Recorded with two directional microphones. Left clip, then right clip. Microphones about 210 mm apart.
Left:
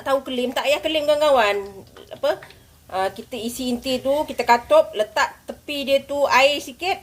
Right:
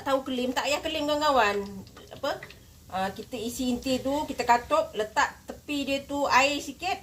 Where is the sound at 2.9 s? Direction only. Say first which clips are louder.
Left 7 dB; 45° left (ahead or behind).